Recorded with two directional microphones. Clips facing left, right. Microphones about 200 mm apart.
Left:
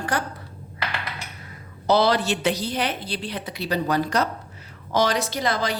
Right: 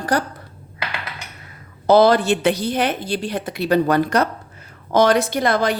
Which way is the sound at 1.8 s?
50° right (ahead or behind).